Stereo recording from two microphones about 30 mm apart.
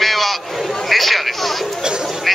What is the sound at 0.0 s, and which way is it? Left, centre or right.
Sheep, centre.